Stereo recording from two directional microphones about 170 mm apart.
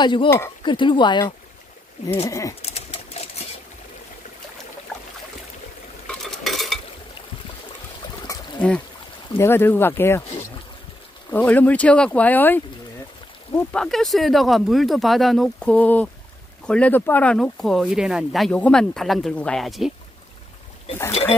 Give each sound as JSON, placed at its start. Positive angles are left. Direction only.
{"t": 0.0, "sound": "speech", "side_deg": 30}
{"t": 2.6, "sound": "pigeon", "side_deg": 35}
{"t": 6.0, "sound": "stir", "side_deg": 0}
{"t": 8.5, "sound": "speech", "side_deg": 5}
{"t": 11.2, "sound": "speech", "side_deg": 10}
{"t": 13.7, "sound": "speech", "side_deg": 0}